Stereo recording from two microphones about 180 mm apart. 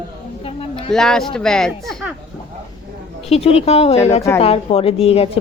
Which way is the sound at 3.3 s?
35° left (ahead or behind).